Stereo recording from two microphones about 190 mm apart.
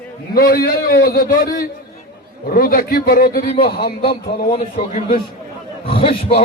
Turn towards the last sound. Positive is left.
turn(degrees=30)  # may be behind; listen again after turning